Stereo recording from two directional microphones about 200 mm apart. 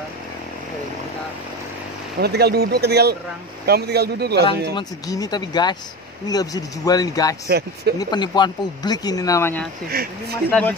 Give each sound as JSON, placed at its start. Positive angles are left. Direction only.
{"t": 2.1, "sound": "speech", "side_deg": -55}
{"t": 4.7, "sound": "speech", "side_deg": 20}
{"t": 7.4, "sound": "speech", "side_deg": -50}
{"t": 8.0, "sound": "speech", "side_deg": 20}
{"t": 9.9, "sound": "speech", "side_deg": -50}